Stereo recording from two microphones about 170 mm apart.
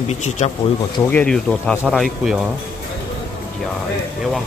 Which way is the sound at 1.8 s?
Centre (ahead or behind).